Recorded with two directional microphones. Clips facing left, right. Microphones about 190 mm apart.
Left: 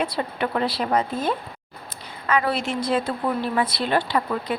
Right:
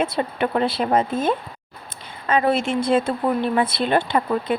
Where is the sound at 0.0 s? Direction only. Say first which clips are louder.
Right 3 dB; 25° right (ahead or behind).